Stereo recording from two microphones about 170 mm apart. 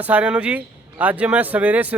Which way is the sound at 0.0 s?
10° right (ahead or behind).